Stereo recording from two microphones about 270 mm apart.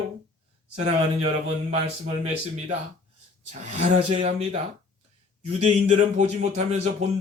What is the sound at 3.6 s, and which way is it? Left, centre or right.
Speech, right.